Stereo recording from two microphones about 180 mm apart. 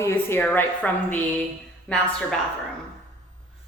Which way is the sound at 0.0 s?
15° left (ahead or behind).